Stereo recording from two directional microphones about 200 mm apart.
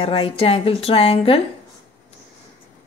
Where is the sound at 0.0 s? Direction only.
25° left (ahead or behind).